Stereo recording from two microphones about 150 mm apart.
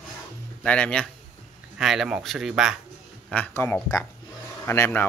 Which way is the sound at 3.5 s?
15° left (ahead or behind).